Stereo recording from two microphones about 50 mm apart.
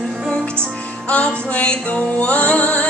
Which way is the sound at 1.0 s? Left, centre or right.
Left.